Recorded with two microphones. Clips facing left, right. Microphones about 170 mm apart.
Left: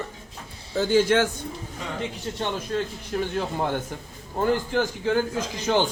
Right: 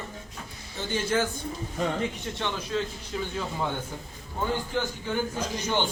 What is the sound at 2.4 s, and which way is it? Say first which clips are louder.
A man's voice: left 3 dB; 55° left (ahead or behind).